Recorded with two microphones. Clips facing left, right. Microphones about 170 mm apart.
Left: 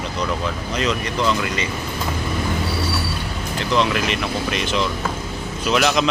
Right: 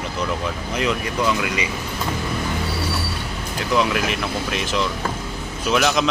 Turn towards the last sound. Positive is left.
turn(degrees=0)  # may be behind; listen again after turning